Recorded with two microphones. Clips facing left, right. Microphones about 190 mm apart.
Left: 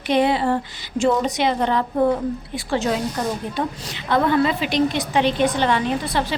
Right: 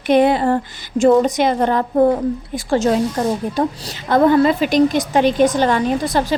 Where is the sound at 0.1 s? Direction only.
50° right (ahead or behind).